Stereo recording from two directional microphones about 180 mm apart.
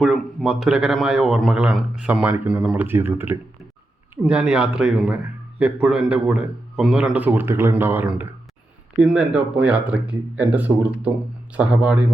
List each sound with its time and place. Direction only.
0.0 s a man's voice: centre (ahead or behind)